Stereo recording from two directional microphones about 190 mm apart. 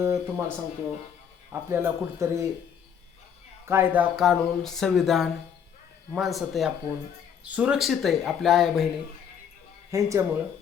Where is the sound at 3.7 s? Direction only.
10° right (ahead or behind).